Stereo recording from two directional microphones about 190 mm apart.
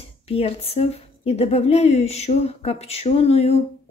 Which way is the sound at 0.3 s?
30° left (ahead or behind).